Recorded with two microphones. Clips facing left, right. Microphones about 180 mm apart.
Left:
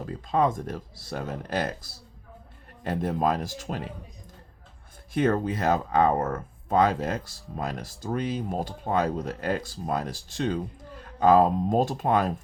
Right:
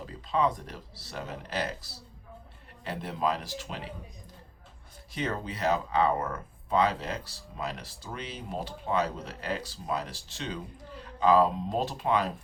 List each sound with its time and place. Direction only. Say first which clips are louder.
0.0 s speech: left 4 dB; 50° left (ahead or behind)
5.1 s speech: left 9 dB; 50° left (ahead or behind)